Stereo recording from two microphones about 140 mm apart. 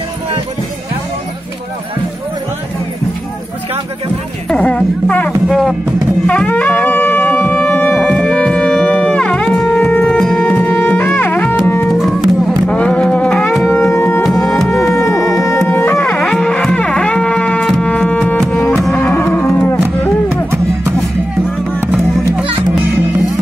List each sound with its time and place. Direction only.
4.5 s music: 10° left (ahead or behind)
6.2 s wind instrument: 10° left (ahead or behind)
11.9 s music: centre (ahead or behind)
13.7 s music: 15° left (ahead or behind)
14.4 s music: centre (ahead or behind)
15.7 s music: 15° left (ahead or behind)
16.0 s music: 5° left (ahead or behind)
19.1 s cattle: 15° left (ahead or behind)